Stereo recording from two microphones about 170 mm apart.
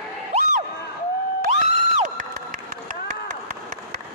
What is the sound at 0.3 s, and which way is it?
Crowd, 45° right (ahead or behind).